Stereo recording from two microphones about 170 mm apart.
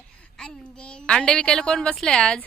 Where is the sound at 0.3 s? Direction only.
5° left (ahead or behind).